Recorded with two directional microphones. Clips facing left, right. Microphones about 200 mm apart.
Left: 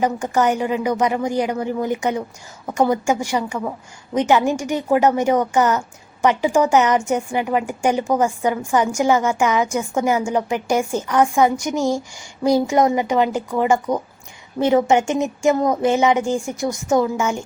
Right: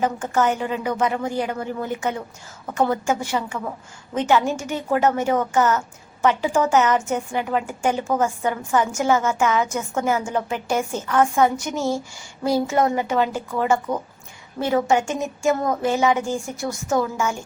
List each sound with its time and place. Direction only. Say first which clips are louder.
0.0 s a woman's voice: left 2 dB; 15° left (ahead or behind)